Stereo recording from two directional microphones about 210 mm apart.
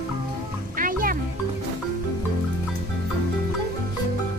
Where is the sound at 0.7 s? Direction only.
40° right (ahead or behind).